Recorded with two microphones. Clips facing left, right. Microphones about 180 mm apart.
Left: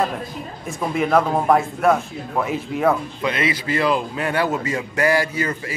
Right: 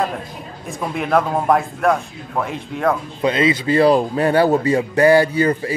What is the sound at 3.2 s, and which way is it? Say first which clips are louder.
A man's voice: right 5 dB; 25° right (ahead or behind).